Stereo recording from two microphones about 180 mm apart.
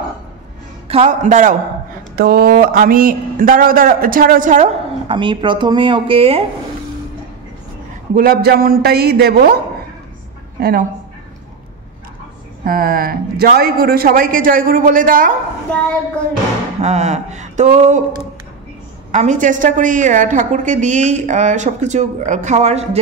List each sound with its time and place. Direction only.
0.8 s speech: 35° right (ahead or behind)
2.1 s speech: 55° right (ahead or behind); by 6.4 s 30° right (ahead or behind)
8.1 s a man's voice: 55° right (ahead or behind)
10.6 s a man's voice: 55° right (ahead or behind)
12.6 s speech: 55° right (ahead or behind)
16.8 s speech: 40° right (ahead or behind)
19.1 s speech: 45° right (ahead or behind)